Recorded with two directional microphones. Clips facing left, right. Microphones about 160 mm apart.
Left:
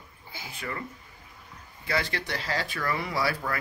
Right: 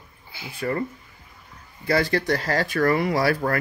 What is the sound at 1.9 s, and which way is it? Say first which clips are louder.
Speech: right 9 dB; 40° right (ahead or behind).